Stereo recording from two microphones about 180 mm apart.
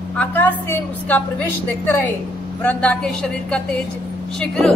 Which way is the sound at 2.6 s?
10° left (ahead or behind).